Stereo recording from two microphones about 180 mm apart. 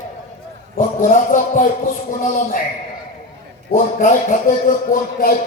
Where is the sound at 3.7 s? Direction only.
45° left (ahead or behind).